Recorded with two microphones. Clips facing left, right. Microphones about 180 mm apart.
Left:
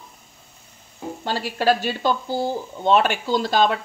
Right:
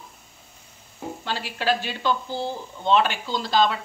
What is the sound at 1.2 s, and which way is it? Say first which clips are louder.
Speech: left 6 dB; 40° left (ahead or behind).